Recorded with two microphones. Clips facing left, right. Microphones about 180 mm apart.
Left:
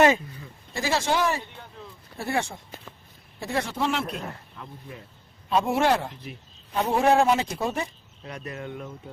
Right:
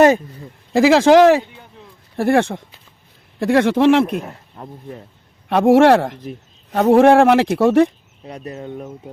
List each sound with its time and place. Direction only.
0.7 s speech: 90° right
2.1 s speech: 65° right (ahead or behind)
3.3 s speech: 85° right
4.5 s speech: 45° right (ahead or behind)
5.5 s speech: 85° right
8.3 s speech: 30° right (ahead or behind)